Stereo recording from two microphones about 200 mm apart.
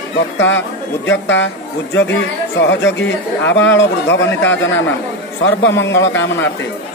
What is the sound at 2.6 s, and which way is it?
Speech, 65° left (ahead or behind).